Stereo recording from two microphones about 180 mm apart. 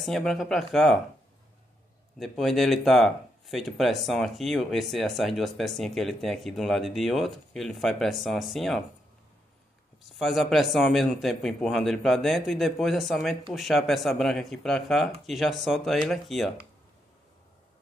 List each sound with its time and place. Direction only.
0.0 s speech: centre (ahead or behind)
2.1 s speech: centre (ahead or behind)
10.0 s speech: centre (ahead or behind)